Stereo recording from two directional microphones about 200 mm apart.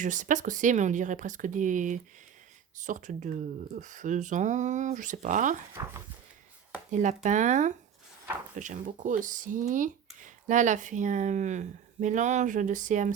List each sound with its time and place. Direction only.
0.0 s speech: 40° right (ahead or behind)
6.9 s speech: 35° right (ahead or behind)